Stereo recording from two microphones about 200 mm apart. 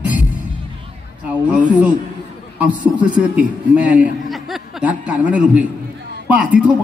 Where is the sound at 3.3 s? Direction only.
5° right (ahead or behind).